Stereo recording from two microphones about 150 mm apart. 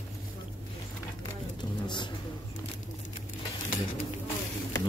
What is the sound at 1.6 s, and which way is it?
Vehicle, 30° left (ahead or behind).